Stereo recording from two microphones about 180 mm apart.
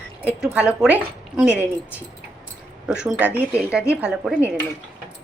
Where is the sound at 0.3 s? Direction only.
5° right (ahead or behind).